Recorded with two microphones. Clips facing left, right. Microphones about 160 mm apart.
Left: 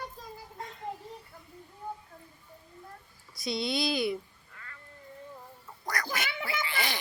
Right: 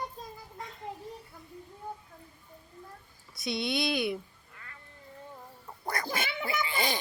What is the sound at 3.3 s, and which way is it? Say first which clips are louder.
Speech: even; centre (ahead or behind).